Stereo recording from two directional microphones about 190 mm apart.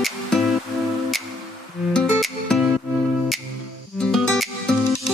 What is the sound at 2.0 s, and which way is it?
Music, centre (ahead or behind).